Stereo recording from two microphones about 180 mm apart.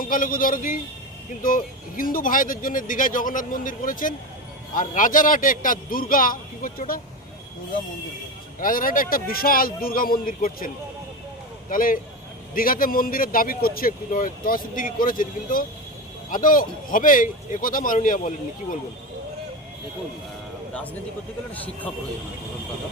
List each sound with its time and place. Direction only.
0.0 s speech: 50° left (ahead or behind)
8.6 s speech: 50° left (ahead or behind)
11.7 s speech: 50° left (ahead or behind)